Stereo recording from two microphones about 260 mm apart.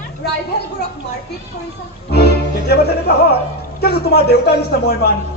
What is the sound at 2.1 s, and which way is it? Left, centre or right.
Music, left.